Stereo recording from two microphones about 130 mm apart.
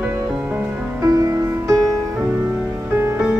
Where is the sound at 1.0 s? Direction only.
25° right (ahead or behind).